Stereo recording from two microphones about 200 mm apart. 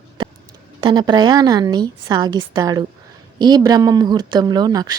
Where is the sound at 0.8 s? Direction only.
20° right (ahead or behind).